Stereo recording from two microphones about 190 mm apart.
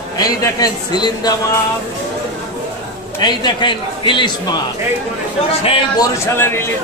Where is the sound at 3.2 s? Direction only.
25° left (ahead or behind).